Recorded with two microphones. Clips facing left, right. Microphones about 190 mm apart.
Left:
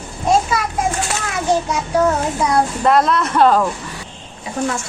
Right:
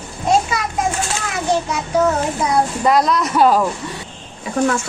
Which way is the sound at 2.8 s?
Centre (ahead or behind).